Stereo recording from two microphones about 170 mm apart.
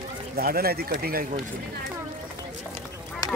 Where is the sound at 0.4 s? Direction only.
65° right (ahead or behind).